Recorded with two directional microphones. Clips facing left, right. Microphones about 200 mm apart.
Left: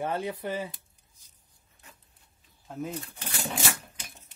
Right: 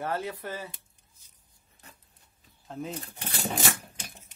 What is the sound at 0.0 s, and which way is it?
Speech, 15° left (ahead or behind).